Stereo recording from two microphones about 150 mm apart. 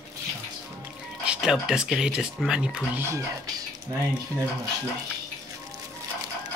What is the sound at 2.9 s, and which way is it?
Speech, 20° right (ahead or behind).